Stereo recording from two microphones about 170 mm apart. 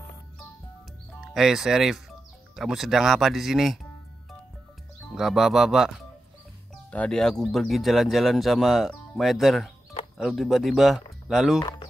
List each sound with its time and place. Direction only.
1.3 s speech: centre (ahead or behind)
5.1 s speech: centre (ahead or behind)
6.9 s speech: 5° left (ahead or behind)
11.6 s a sound: 25° left (ahead or behind)